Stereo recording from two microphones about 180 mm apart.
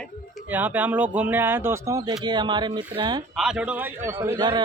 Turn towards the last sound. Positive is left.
turn(degrees=-20)  # may be behind; listen again after turning